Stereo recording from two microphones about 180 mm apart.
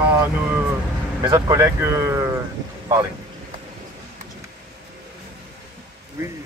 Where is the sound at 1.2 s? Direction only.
25° right (ahead or behind).